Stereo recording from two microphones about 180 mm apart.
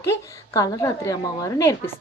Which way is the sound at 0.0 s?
15° left (ahead or behind).